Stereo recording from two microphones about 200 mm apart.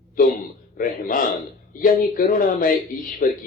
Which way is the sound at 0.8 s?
45° left (ahead or behind).